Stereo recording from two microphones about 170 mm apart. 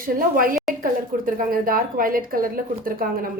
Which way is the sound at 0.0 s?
55° right (ahead or behind).